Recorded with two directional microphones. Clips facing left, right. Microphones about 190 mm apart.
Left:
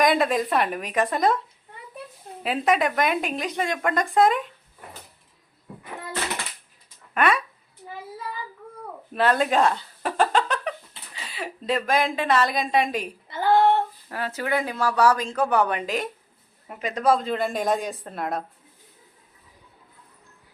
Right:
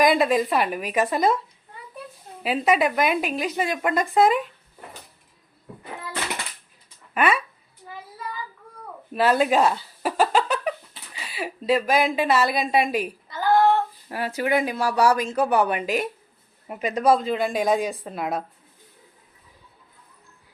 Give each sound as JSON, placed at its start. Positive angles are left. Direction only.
{"t": 0.0, "sound": "a woman's voice", "side_deg": 0}
{"t": 2.4, "sound": "a woman's voice", "side_deg": -5}
{"t": 7.1, "sound": "speech", "side_deg": -5}
{"t": 9.1, "sound": "a sound", "side_deg": -5}
{"t": 13.2, "sound": "female singing", "side_deg": 25}
{"t": 14.1, "sound": "speech", "side_deg": -10}
{"t": 17.2, "sound": "a woman's voice", "side_deg": 0}